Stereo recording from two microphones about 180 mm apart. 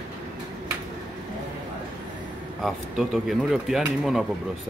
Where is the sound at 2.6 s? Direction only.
Centre (ahead or behind).